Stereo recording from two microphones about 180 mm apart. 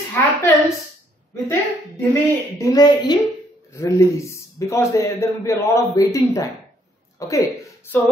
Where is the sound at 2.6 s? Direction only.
20° left (ahead or behind).